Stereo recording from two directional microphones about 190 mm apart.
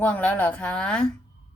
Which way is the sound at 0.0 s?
10° left (ahead or behind).